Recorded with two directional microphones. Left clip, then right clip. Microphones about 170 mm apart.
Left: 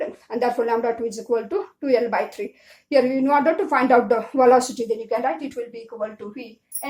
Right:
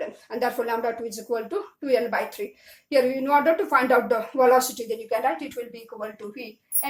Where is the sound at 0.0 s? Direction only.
35° left (ahead or behind).